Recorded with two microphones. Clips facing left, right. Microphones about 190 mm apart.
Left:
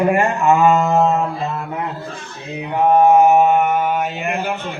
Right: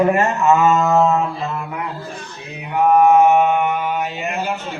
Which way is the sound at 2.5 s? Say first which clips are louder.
Even; 25° left (ahead or behind).